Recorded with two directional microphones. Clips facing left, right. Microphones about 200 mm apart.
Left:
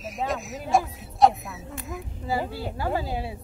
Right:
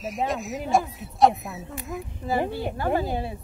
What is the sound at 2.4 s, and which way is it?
Speech, 20° right (ahead or behind).